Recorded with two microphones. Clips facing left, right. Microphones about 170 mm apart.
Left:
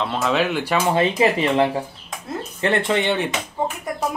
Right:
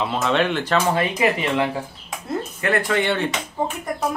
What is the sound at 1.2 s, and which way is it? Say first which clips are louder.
Speech: left 2 dB; 30° left (ahead or behind).